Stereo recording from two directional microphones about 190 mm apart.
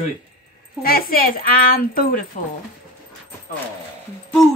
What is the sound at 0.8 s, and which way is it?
A woman's voice, 50° left (ahead or behind).